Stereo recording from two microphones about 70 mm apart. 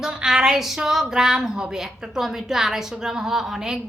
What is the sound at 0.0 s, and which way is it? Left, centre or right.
A woman's voice, centre.